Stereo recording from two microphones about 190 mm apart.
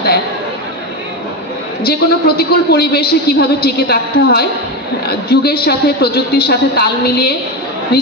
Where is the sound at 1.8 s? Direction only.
55° left (ahead or behind).